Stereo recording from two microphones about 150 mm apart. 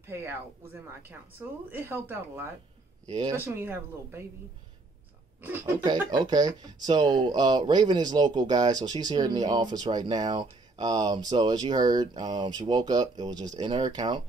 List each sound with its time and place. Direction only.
0.0 s a woman's voice: 15° right (ahead or behind)
3.1 s speech: 25° right (ahead or behind)
3.3 s a woman's voice: 15° right (ahead or behind)
5.4 s a woman's voice: 15° right (ahead or behind)
5.9 s speech: 25° right (ahead or behind)